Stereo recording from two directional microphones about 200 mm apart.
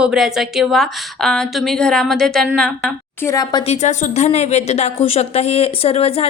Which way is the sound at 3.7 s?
35° left (ahead or behind).